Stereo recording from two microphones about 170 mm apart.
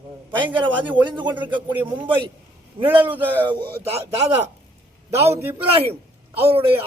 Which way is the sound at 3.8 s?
35° right (ahead or behind).